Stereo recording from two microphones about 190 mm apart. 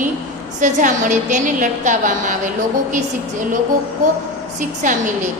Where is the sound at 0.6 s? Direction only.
40° right (ahead or behind).